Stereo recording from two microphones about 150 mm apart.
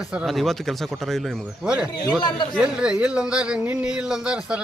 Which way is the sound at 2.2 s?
30° left (ahead or behind).